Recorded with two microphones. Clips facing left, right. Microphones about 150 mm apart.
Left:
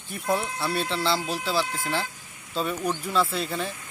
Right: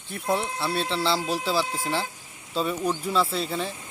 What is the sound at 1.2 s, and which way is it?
Speech, 35° right (ahead or behind).